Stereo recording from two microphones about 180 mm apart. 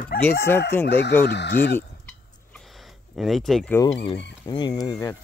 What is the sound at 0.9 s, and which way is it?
Speech, 65° left (ahead or behind).